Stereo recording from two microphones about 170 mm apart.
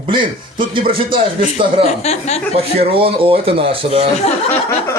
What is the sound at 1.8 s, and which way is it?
Speech, 40° left (ahead or behind).